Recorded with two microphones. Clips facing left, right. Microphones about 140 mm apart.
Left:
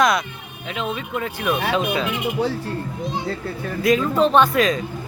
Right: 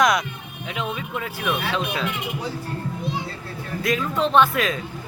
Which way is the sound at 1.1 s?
Centre (ahead or behind).